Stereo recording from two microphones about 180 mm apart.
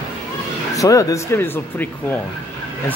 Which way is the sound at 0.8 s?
20° left (ahead or behind).